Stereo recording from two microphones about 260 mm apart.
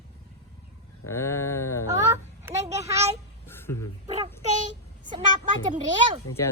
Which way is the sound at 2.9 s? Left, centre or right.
Right.